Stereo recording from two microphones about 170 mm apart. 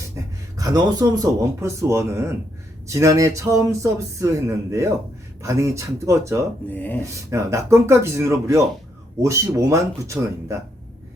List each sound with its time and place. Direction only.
0.2 s a sound: 15° right (ahead or behind)
0.5 s speech: 20° right (ahead or behind)
6.7 s speech: 10° left (ahead or behind)
7.3 s speech: 15° right (ahead or behind)